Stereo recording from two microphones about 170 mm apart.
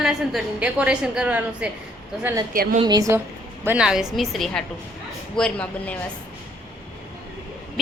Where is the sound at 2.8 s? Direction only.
20° right (ahead or behind).